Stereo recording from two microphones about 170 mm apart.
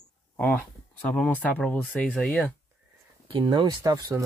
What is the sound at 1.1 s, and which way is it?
Speech, 10° left (ahead or behind).